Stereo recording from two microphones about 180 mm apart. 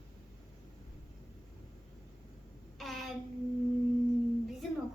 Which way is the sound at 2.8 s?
Centre (ahead or behind).